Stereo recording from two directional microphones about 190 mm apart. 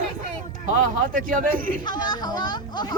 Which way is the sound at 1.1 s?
45° right (ahead or behind).